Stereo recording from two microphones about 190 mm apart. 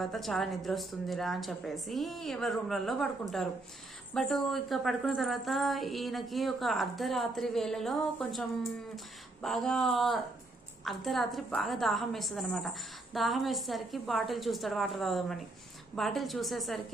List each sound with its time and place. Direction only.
0.0 s a woman's voice: centre (ahead or behind)